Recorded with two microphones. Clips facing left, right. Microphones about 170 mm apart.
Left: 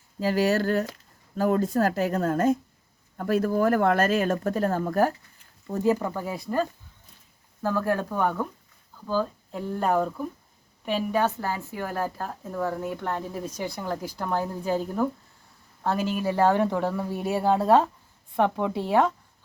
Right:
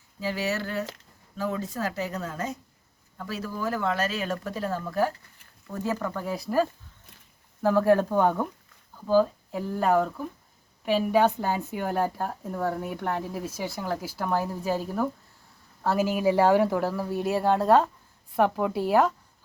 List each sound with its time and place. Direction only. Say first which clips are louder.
0.2 s speech: left 6 dB; 45° left (ahead or behind)
5.8 s speech: left 6 dB; 20° left (ahead or behind)
6.1 s speech: right 1 dB; centre (ahead or behind)
7.6 s a woman's voice: right 5 dB; 15° right (ahead or behind)